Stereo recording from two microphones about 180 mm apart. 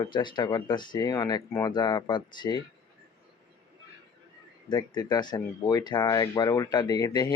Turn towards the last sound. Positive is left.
turn(degrees=20)  # may be behind; listen again after turning